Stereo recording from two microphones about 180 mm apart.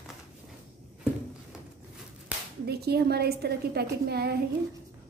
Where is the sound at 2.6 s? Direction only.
60° right (ahead or behind).